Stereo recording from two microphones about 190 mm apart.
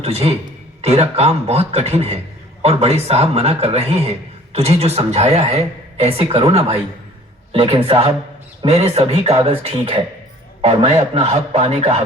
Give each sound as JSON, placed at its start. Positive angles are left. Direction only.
{"t": 0.0, "sound": "a man's voice", "side_deg": -30}